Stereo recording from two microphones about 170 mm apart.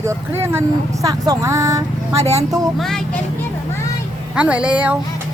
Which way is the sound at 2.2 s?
40° right (ahead or behind).